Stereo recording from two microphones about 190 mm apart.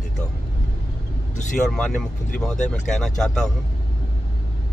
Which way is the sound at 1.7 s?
5° left (ahead or behind).